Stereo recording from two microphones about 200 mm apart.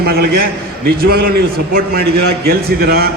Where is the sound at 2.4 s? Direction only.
50° right (ahead or behind).